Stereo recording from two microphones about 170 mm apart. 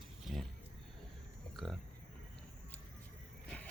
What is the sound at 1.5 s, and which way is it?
Speech, centre (ahead or behind).